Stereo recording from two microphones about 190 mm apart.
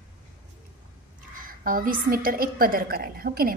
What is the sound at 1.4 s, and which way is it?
A woman's voice, 45° right (ahead or behind).